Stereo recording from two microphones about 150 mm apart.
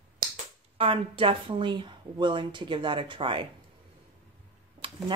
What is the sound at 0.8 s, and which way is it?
Speech, 35° right (ahead or behind).